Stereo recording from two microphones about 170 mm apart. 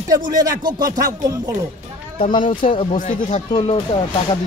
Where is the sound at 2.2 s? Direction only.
30° left (ahead or behind).